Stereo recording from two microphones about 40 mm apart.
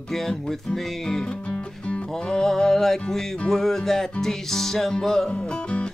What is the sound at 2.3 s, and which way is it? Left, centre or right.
Music, centre.